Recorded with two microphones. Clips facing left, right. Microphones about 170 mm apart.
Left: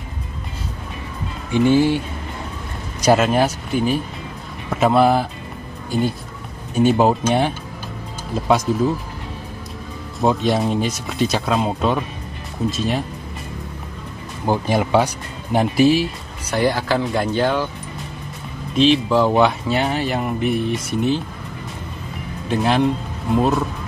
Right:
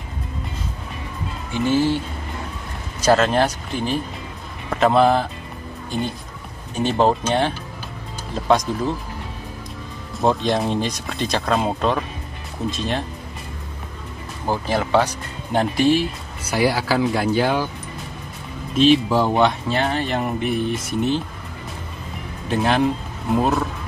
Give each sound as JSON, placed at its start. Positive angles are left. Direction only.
{"t": 1.5, "sound": "speech", "side_deg": 15}
{"t": 3.0, "sound": "speech", "side_deg": 10}
{"t": 6.7, "sound": "speech", "side_deg": 10}
{"t": 10.2, "sound": "speech", "side_deg": 0}
{"t": 14.4, "sound": "speech", "side_deg": 15}
{"t": 16.4, "sound": "speech", "side_deg": -5}
{"t": 18.8, "sound": "speech", "side_deg": 0}
{"t": 22.5, "sound": "speech", "side_deg": 0}